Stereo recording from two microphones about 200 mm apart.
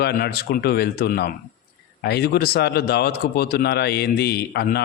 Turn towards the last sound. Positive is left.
turn(degrees=55)  # may be behind; listen again after turning